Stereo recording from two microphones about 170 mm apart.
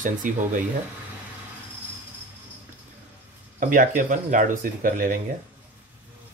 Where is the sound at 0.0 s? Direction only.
50° right (ahead or behind).